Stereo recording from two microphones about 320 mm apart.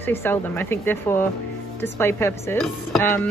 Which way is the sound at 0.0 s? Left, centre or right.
Centre.